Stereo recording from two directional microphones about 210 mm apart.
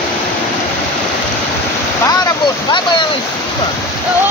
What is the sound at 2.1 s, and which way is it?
Speech, 20° left (ahead or behind).